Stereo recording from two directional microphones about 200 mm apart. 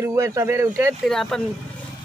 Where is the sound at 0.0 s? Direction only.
15° right (ahead or behind).